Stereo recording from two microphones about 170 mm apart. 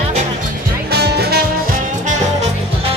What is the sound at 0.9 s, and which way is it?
Music, 70° right (ahead or behind).